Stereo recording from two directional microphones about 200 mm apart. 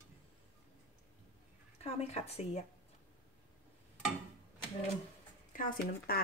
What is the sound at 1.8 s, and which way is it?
Speech, 30° left (ahead or behind).